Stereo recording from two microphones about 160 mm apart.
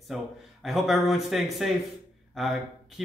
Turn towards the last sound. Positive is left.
turn(degrees=0)  # may be behind; listen again after turning